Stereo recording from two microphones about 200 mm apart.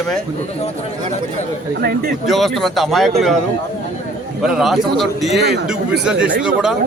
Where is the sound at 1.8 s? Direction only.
50° right (ahead or behind).